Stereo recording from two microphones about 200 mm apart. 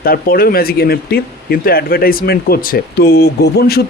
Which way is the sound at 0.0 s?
50° left (ahead or behind).